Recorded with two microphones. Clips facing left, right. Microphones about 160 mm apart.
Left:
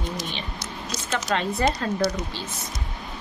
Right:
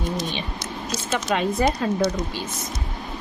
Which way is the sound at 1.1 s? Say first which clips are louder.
Right 3 dB; 10° right (ahead or behind).